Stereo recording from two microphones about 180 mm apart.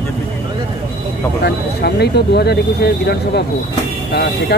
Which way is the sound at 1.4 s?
65° left (ahead or behind).